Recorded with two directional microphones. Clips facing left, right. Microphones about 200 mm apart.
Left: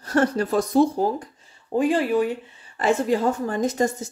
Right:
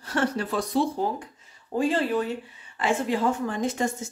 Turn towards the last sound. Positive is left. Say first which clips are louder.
# left 4 dB
turn(degrees=40)  # may be behind; listen again after turning